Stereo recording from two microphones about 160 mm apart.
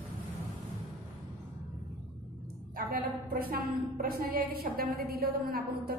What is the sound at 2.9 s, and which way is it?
A woman's voice, 65° right (ahead or behind).